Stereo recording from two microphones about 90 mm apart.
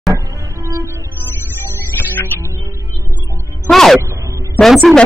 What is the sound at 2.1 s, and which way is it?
Music, 25° left (ahead or behind).